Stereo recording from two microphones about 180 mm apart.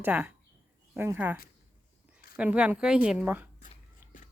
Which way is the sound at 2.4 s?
5° right (ahead or behind).